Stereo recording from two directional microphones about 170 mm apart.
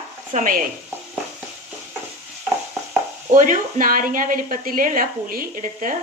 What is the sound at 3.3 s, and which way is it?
A woman's voice, 50° right (ahead or behind).